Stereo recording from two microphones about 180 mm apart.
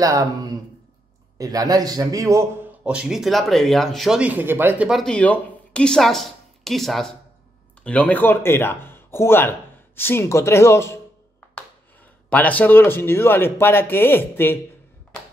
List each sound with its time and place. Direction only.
0.0 s a man's voice: 20° right (ahead or behind); by 11.0 s 15° left (ahead or behind)
12.3 s speech: 10° left (ahead or behind)